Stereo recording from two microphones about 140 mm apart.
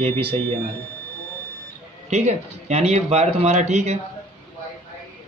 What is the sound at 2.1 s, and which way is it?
Speech, 55° right (ahead or behind).